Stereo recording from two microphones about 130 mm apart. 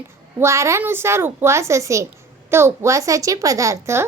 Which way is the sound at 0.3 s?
20° right (ahead or behind).